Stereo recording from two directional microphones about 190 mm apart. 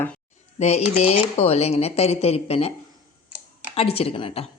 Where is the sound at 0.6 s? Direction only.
35° left (ahead or behind).